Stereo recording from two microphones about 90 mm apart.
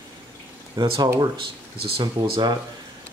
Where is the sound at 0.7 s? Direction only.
75° right (ahead or behind).